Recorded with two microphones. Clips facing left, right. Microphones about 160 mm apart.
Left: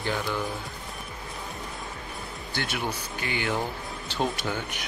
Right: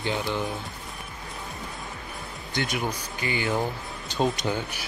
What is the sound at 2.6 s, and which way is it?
Music, centre (ahead or behind).